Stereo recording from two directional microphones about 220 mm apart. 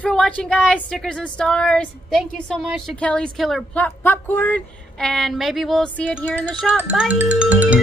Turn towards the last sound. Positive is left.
turn(degrees=-5)  # may be behind; listen again after turning